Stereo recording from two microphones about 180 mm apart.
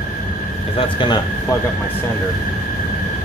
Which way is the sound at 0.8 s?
25° left (ahead or behind).